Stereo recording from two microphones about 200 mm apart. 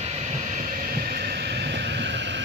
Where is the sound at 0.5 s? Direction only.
40° right (ahead or behind).